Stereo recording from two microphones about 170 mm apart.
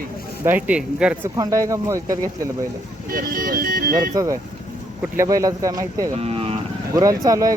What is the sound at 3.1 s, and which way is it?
Speech, 55° right (ahead or behind).